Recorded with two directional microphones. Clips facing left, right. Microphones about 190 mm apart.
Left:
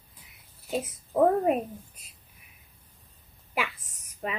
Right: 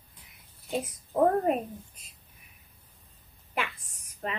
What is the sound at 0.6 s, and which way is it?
A woman's voice, centre (ahead or behind).